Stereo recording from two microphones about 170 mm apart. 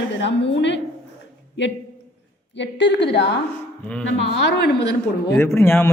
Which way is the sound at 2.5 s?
90° left.